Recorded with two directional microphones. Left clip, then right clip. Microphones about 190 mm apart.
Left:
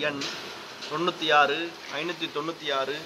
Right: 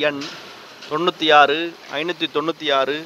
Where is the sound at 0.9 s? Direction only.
45° right (ahead or behind).